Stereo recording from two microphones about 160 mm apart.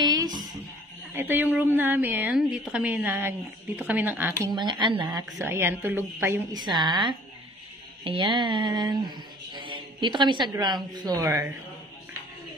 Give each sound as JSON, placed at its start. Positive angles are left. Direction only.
{"t": 0.0, "sound": "music", "side_deg": -25}
{"t": 1.1, "sound": "a woman's voice", "side_deg": -10}
{"t": 4.4, "sound": "speech", "side_deg": -25}
{"t": 5.5, "sound": "a woman's voice", "side_deg": -15}
{"t": 6.5, "sound": "speech", "side_deg": -25}
{"t": 8.0, "sound": "mantra", "side_deg": -30}
{"t": 10.5, "sound": "speech", "side_deg": -25}